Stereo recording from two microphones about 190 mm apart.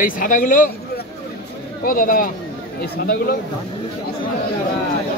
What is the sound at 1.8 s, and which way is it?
Speech, 45° left (ahead or behind).